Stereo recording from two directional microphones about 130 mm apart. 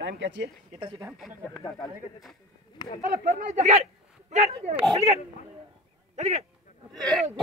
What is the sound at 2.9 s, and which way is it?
A man's voice, 70° right (ahead or behind).